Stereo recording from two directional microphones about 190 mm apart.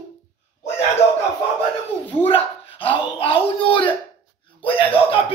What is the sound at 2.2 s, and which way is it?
Dog, 30° left (ahead or behind).